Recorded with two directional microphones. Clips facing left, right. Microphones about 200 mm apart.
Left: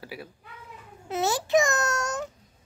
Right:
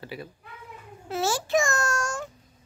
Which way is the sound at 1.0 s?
20° left (ahead or behind).